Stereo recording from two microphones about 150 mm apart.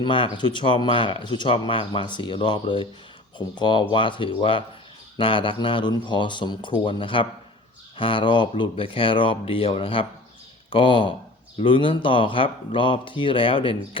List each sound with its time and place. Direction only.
0.0 s speech: 35° left (ahead or behind)